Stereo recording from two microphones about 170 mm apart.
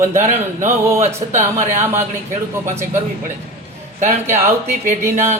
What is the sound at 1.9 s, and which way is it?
Speech, 45° right (ahead or behind).